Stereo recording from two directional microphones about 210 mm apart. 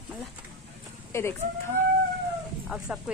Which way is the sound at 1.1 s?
10° left (ahead or behind).